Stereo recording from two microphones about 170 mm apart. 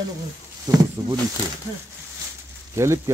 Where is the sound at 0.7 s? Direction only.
20° right (ahead or behind).